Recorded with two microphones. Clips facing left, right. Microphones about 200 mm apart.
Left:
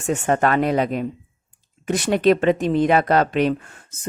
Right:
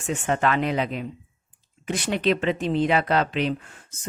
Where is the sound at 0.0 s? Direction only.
45° left (ahead or behind).